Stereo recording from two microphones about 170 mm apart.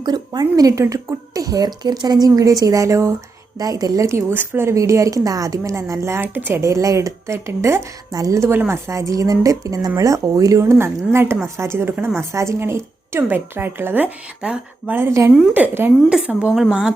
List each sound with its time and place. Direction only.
0.0 s a woman's voice: 25° right (ahead or behind); by 16.9 s 5° right (ahead or behind)